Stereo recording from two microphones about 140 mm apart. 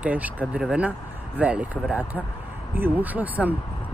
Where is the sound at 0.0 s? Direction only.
10° right (ahead or behind).